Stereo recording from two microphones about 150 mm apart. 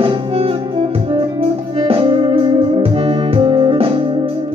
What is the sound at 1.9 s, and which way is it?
Music, 35° right (ahead or behind).